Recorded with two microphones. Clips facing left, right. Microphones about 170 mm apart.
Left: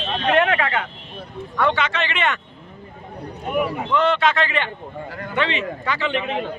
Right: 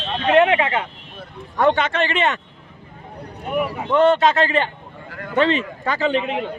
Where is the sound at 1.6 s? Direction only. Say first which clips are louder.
Right 4 dB; 45° right (ahead or behind).